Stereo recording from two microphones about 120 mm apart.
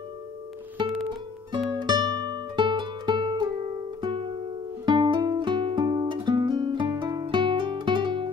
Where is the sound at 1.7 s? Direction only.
40° right (ahead or behind).